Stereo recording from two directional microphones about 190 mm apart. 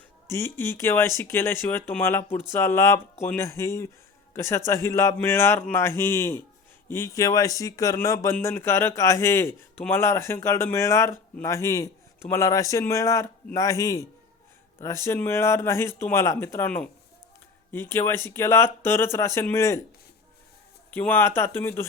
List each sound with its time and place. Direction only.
0.3 s speech: 15° left (ahead or behind)
20.9 s speech: 10° left (ahead or behind)